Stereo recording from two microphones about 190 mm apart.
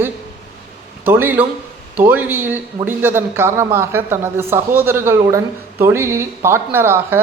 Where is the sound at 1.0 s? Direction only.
10° right (ahead or behind).